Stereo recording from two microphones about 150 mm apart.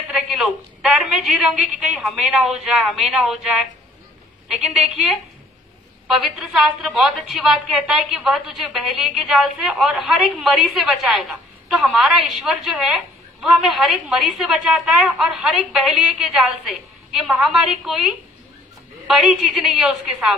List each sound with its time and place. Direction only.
0.1 s a woman's voice: centre (ahead or behind)